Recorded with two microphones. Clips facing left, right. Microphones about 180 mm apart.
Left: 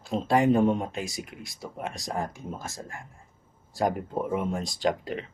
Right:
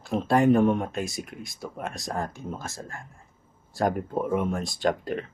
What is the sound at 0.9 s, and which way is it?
Speech, 50° right (ahead or behind).